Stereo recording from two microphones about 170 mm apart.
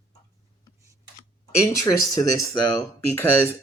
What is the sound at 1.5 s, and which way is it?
Speech, 20° left (ahead or behind).